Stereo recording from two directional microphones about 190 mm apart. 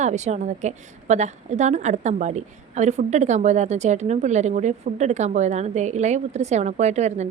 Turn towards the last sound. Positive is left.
turn(degrees=-35)  # may be behind; listen again after turning